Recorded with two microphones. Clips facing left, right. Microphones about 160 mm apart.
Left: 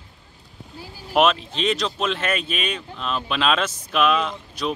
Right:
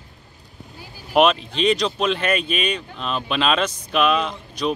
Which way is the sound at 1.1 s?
Centre (ahead or behind).